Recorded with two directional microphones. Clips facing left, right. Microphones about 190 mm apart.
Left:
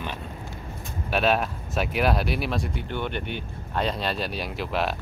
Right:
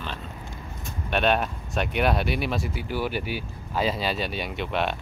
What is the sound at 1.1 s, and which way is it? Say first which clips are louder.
Speech: even; centre (ahead or behind).